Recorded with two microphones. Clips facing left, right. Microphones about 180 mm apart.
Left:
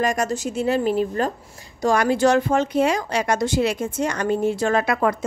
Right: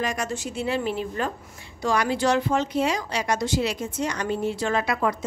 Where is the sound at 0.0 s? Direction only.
45° left (ahead or behind).